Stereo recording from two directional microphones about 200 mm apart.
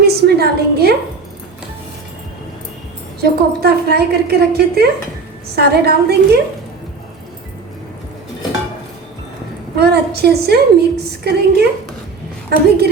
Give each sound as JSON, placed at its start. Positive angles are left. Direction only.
{"t": 0.0, "sound": "a sound", "side_deg": -55}
{"t": 3.2, "sound": "a woman's voice", "side_deg": -55}
{"t": 9.7, "sound": "a woman's voice", "side_deg": -55}